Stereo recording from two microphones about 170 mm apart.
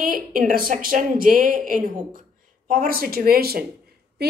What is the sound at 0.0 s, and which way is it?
A woman's voice, 55° right (ahead or behind).